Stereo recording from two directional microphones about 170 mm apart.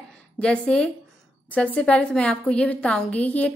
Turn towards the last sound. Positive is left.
turn(degrees=10)  # may be behind; listen again after turning